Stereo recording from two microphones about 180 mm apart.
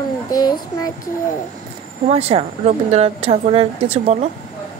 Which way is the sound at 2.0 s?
35° right (ahead or behind).